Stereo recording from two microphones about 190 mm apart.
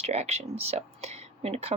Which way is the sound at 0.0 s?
35° right (ahead or behind).